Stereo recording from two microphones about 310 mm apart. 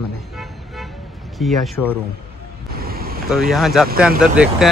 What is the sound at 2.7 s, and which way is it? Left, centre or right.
Vehicle, right.